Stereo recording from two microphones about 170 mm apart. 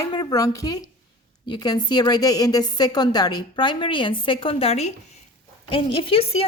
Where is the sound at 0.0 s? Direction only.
20° left (ahead or behind).